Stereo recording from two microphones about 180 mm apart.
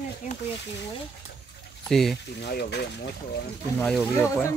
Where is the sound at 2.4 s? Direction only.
65° left (ahead or behind).